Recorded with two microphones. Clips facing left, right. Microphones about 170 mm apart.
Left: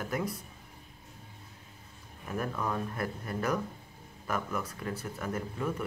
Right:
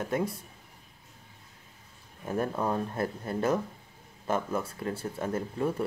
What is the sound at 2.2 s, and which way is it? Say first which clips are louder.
Speech: right 4 dB; 30° right (ahead or behind).